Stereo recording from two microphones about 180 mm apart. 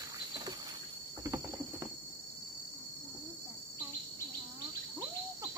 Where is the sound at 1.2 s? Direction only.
15° right (ahead or behind).